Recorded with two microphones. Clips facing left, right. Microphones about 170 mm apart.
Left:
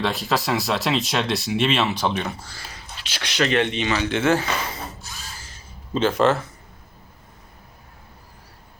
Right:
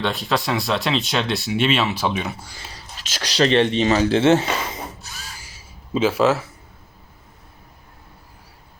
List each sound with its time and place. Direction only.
0.0 s speech: centre (ahead or behind)
2.7 s speech: 40° right (ahead or behind)
4.3 s speech: 20° right (ahead or behind)
5.4 s a sound: 10° right (ahead or behind)